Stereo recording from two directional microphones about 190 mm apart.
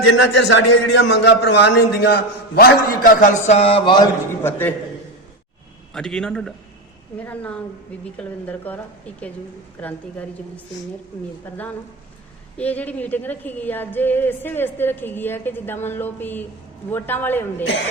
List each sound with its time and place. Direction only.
0.0 s a man's voice: 75° left (ahead or behind); by 4.7 s 10° left (ahead or behind)
5.9 s a man's voice: 5° left (ahead or behind)
11.5 s a woman's voice: 10° left (ahead or behind)